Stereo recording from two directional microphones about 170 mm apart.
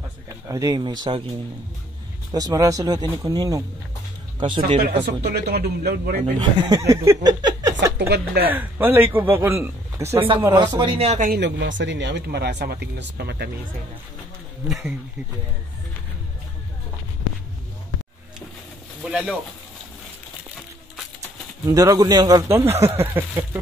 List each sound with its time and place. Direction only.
0.3 s speech: 20° right (ahead or behind)
2.3 s speech: 20° right (ahead or behind)
4.7 s speech: 70° right (ahead or behind)
6.3 s speech: 20° right (ahead or behind); by 11.2 s 35° right (ahead or behind)
11.2 s speech: 85° right
14.7 s speech: centre (ahead or behind)
19.0 s speech: centre (ahead or behind)
21.6 s speech: 20° right (ahead or behind)